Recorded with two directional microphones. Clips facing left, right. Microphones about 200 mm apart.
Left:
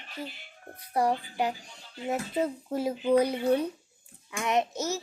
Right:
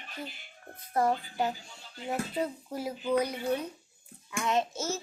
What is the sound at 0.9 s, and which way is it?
A child's voice, 15° left (ahead or behind).